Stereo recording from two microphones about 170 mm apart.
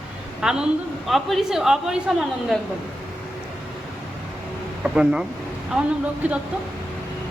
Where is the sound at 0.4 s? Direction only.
5° right (ahead or behind).